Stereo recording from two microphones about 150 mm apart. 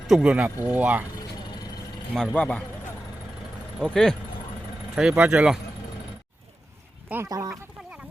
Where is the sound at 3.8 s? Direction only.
5° left (ahead or behind).